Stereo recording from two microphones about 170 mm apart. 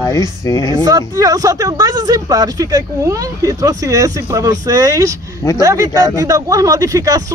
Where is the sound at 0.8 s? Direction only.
20° right (ahead or behind).